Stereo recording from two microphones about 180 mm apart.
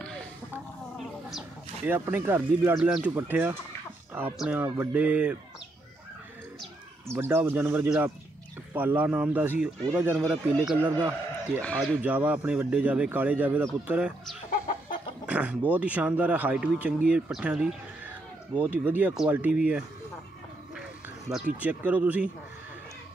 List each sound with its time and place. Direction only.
1.9 s speech: 10° right (ahead or behind)
7.1 s a man's voice: 10° right (ahead or behind)
11.6 s speech: 5° left (ahead or behind)
12.0 s speech: 10° right (ahead or behind)
15.2 s a sound: 10° right (ahead or behind)
15.7 s speech: 10° right (ahead or behind)
21.3 s speech: 10° right (ahead or behind)